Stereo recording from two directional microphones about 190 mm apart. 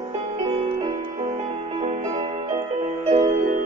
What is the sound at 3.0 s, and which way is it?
Music, 35° right (ahead or behind).